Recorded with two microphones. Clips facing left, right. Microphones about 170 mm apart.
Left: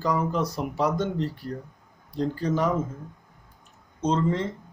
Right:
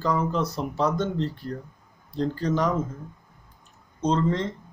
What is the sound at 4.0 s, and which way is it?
Speech, 10° left (ahead or behind).